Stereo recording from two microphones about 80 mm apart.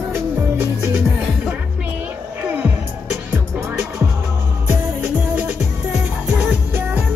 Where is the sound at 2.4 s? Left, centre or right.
Centre.